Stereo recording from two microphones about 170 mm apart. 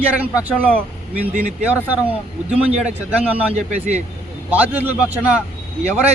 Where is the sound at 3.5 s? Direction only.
40° right (ahead or behind).